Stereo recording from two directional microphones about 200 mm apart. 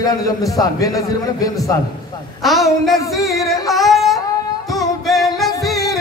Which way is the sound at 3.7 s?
Centre (ahead or behind).